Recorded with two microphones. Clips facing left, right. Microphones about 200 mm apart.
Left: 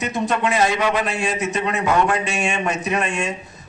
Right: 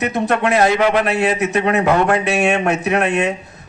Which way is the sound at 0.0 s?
60° right (ahead or behind).